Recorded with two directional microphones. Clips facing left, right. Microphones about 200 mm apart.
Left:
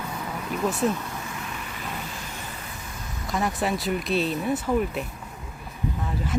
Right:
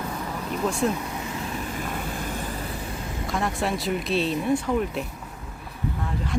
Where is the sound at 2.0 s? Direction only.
55° right (ahead or behind).